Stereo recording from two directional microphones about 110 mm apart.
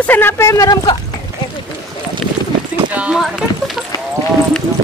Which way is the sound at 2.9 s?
10° right (ahead or behind).